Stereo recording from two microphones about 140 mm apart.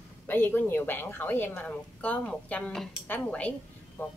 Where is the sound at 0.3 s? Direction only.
15° left (ahead or behind).